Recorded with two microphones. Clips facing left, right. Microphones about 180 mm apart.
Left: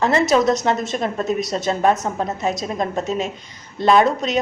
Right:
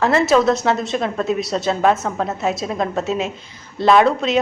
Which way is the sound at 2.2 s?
Centre (ahead or behind).